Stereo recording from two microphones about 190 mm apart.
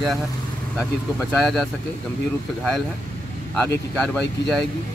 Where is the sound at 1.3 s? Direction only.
Centre (ahead or behind).